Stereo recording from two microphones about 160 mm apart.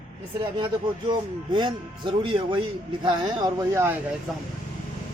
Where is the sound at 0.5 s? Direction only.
30° right (ahead or behind).